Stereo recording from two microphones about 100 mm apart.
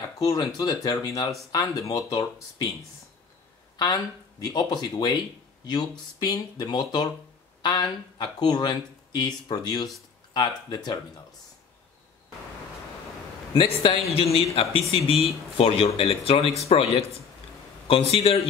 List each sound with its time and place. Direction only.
0.2 s speech: 40° left (ahead or behind)
3.7 s speech: 45° left (ahead or behind)
13.5 s a man's voice: 60° left (ahead or behind); by 18.5 s 75° left (ahead or behind)